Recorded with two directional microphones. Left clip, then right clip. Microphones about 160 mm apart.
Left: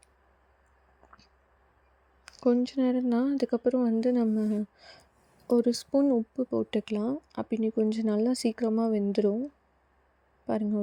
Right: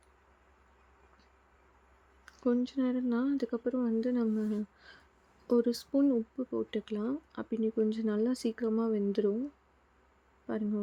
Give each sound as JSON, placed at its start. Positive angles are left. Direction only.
{"t": 2.2, "sound": "speech", "side_deg": 35}
{"t": 5.5, "sound": "speech", "side_deg": 25}
{"t": 10.5, "sound": "speech", "side_deg": 30}